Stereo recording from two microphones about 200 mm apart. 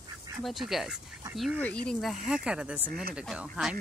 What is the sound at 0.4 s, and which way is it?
Speech, centre (ahead or behind).